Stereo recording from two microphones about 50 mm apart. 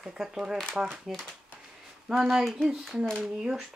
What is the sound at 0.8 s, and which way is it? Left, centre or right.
Speech, right.